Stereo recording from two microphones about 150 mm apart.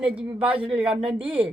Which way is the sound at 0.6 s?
35° right (ahead or behind).